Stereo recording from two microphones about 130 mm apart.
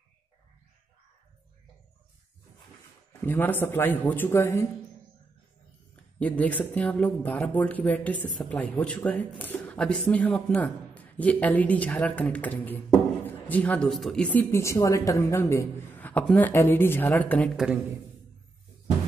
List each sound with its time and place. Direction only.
3.3 s speech: 15° left (ahead or behind)
6.1 s a man's voice: 10° left (ahead or behind)
14.5 s a man's voice: 20° left (ahead or behind)